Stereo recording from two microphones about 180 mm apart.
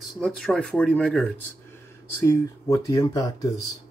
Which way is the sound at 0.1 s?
5° left (ahead or behind).